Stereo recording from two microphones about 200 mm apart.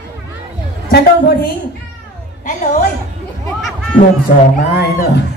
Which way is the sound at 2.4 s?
40° left (ahead or behind).